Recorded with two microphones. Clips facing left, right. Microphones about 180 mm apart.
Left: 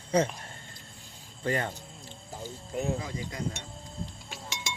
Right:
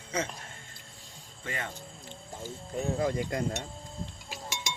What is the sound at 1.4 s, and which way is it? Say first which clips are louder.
Speech: left 8 dB; 35° left (ahead or behind).